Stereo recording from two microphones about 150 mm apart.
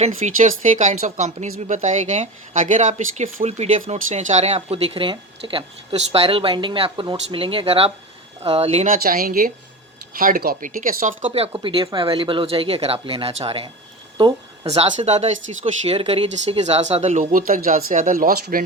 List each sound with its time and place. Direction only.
0.0 s speech: 55° right (ahead or behind)
8.9 s a woman's voice: 75° right (ahead or behind)
11.3 s speech: 40° right (ahead or behind)
14.2 s a sound: 30° right (ahead or behind)
14.7 s speech: 45° right (ahead or behind); by 18.6 s 70° right (ahead or behind)